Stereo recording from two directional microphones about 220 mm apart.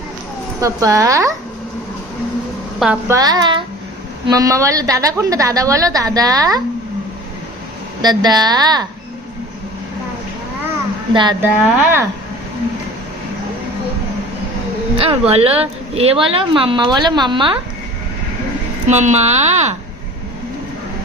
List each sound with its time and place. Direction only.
0.6 s a woman's voice: 15° right (ahead or behind)
2.7 s a woman's voice: centre (ahead or behind)
3.1 s a woman's voice: 15° right (ahead or behind)
8.0 s a woman's voice: 20° right (ahead or behind)
11.1 s a woman's voice: 20° right (ahead or behind)
11.8 s a woman's voice: 10° right (ahead or behind)
14.9 s a woman's voice: 25° right (ahead or behind)
18.9 s a woman's voice: 30° right (ahead or behind)